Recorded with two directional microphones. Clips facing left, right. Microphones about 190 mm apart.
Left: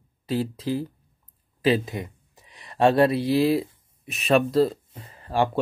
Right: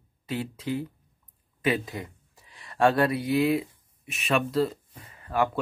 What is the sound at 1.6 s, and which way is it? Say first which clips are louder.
Speech: left 5 dB; 25° left (ahead or behind).